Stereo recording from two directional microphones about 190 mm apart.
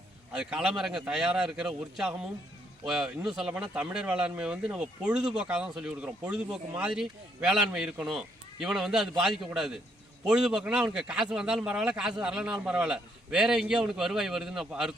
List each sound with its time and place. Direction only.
0.3 s speech: 5° right (ahead or behind)